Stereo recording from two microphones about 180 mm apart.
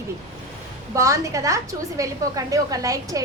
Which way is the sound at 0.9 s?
20° right (ahead or behind).